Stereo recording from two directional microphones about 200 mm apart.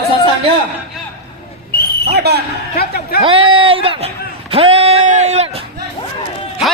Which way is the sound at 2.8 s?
50° left (ahead or behind).